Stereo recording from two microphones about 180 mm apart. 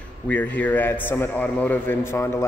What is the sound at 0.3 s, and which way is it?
A man's voice, 10° left (ahead or behind).